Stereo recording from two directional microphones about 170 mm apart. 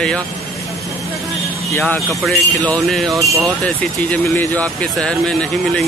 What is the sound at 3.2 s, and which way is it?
Speech, 20° right (ahead or behind).